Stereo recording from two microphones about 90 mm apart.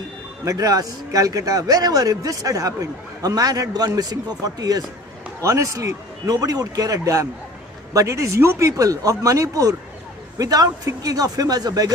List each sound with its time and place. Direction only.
0.5 s a man's voice: 40° right (ahead or behind)